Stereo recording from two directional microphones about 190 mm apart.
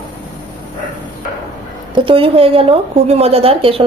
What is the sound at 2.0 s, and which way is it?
A woman's voice, 30° right (ahead or behind).